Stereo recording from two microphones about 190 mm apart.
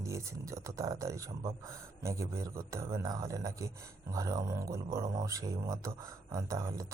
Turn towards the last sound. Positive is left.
turn(degrees=-15)  # may be behind; listen again after turning